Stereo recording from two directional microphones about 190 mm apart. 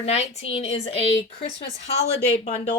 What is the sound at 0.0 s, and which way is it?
A woman's voice, 35° left (ahead or behind).